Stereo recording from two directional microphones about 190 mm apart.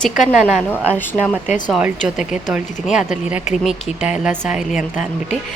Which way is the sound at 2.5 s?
5° right (ahead or behind).